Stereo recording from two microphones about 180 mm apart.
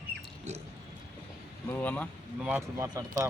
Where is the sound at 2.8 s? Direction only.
20° right (ahead or behind).